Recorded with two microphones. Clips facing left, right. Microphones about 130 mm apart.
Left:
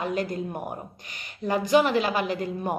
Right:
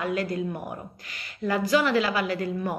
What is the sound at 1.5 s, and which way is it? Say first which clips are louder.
Speech: left 2 dB; 20° left (ahead or behind).